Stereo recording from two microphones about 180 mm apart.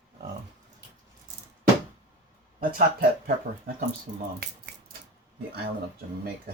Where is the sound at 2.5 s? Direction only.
55° right (ahead or behind).